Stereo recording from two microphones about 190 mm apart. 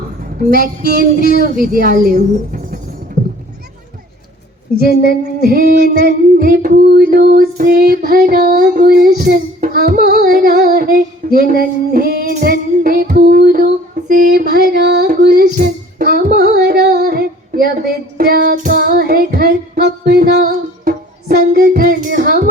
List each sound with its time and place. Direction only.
0.3 s female singing: 45° right (ahead or behind)
1.2 s a sound: 50° left (ahead or behind)
1.5 s female singing: 50° right (ahead or behind)
4.8 s a sound: 50° left (ahead or behind)
5.5 s female singing: 50° right (ahead or behind)
8.8 s music: 55° right (ahead or behind)
14.7 s female singing: 60° right (ahead or behind)
16.4 s music: 55° right (ahead or behind)